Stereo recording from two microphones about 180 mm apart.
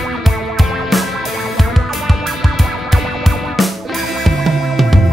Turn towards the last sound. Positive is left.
turn(degrees=0)  # may be behind; listen again after turning